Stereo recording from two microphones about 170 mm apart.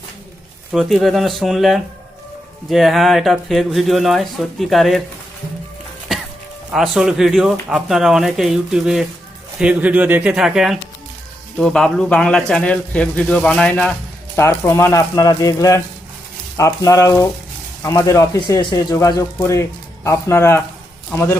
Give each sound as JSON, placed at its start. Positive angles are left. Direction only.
{"t": 0.7, "sound": "speech", "side_deg": 0}
{"t": 6.7, "sound": "speech", "side_deg": 0}
{"t": 14.3, "sound": "a man's voice", "side_deg": 15}